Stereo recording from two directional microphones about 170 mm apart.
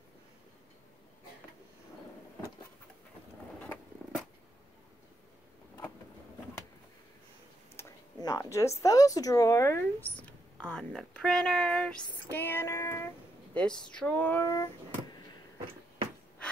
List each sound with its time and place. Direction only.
3.5 s vehicle: 10° left (ahead or behind)
7.7 s a woman's voice: 20° left (ahead or behind)